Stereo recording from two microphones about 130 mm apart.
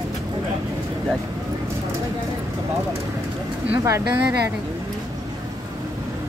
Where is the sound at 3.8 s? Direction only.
20° right (ahead or behind).